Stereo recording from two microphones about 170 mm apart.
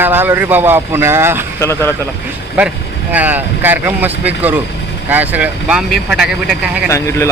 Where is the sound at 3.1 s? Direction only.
10° right (ahead or behind).